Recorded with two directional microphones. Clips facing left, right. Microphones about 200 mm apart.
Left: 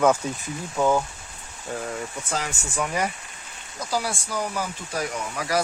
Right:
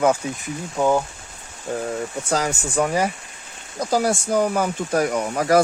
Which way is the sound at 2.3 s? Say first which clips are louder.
Right 9 dB; 45° right (ahead or behind).